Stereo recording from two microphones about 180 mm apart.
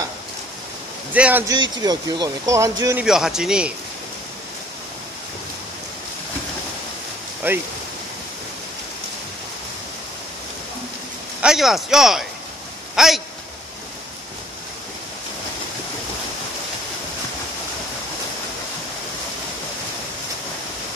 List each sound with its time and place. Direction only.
1.1 s speech: 5° right (ahead or behind)
1.5 s speech: 20° right (ahead or behind)
3.1 s a man's voice: 5° right (ahead or behind)
7.4 s speech: 10° right (ahead or behind)
11.4 s a man's voice: centre (ahead or behind)